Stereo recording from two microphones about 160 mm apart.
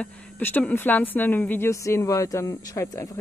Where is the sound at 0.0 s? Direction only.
10° left (ahead or behind).